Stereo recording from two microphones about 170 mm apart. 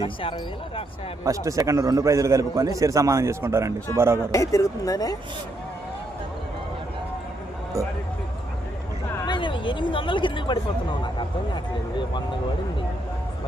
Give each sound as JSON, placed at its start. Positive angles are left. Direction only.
{"t": 0.0, "sound": "speech", "side_deg": 30}
{"t": 1.2, "sound": "a man's voice", "side_deg": -20}
{"t": 4.3, "sound": "speech", "side_deg": 20}
{"t": 9.2, "sound": "speech", "side_deg": 30}